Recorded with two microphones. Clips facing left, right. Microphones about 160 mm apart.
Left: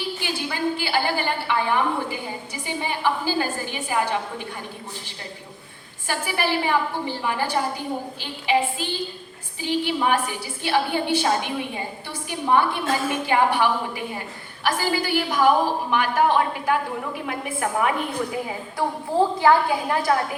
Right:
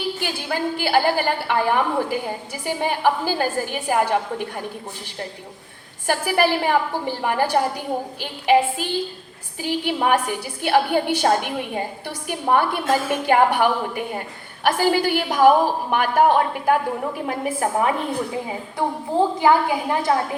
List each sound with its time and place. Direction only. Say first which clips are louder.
0.2 s a woman's voice: right 2 dB; 55° right (ahead or behind)
6.1 s a woman's voice: right 5 dB; 55° right (ahead or behind)
17.2 s a woman's voice: right 4 dB; 35° right (ahead or behind)
18.4 s a woman's voice: right 2 dB; 20° right (ahead or behind)